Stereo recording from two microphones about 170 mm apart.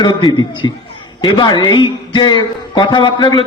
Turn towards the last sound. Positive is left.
turn(degrees=25)  # may be behind; listen again after turning